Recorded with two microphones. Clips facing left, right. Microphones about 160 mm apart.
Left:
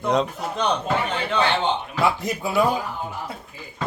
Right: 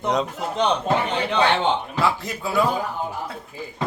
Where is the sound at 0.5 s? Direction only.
20° right (ahead or behind).